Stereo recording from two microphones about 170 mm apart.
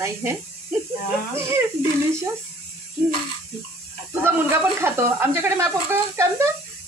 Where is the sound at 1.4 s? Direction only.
15° right (ahead or behind).